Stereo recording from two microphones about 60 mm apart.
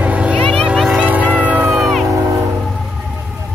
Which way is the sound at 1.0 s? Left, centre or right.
Right.